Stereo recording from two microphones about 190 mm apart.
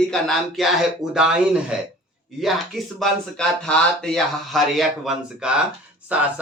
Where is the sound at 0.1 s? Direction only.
Centre (ahead or behind).